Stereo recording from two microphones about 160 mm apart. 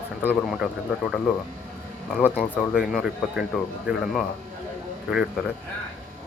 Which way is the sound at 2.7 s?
5° right (ahead or behind).